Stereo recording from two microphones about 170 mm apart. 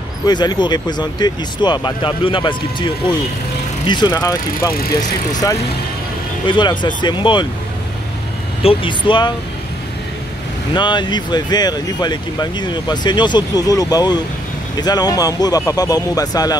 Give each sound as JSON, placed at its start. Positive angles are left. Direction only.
{"t": 0.3, "sound": "speech", "side_deg": 25}
{"t": 3.8, "sound": "speech", "side_deg": 25}
{"t": 6.4, "sound": "speech", "side_deg": 25}
{"t": 8.6, "sound": "speech", "side_deg": 30}
{"t": 10.7, "sound": "speech", "side_deg": 25}